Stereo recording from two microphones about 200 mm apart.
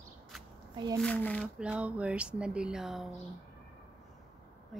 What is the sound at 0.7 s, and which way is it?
Speech, 20° right (ahead or behind).